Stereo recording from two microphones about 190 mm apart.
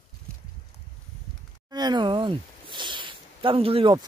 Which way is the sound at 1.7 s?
20° right (ahead or behind).